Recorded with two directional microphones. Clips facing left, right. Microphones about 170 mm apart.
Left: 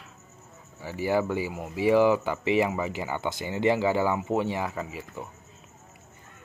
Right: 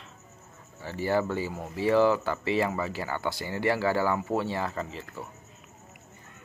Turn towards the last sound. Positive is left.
turn(degrees=10)  # may be behind; listen again after turning